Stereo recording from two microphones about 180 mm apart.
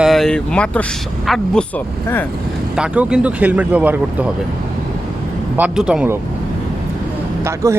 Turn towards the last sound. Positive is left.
turn(degrees=-15)  # may be behind; listen again after turning